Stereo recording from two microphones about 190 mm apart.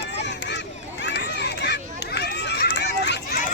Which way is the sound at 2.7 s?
65° left (ahead or behind).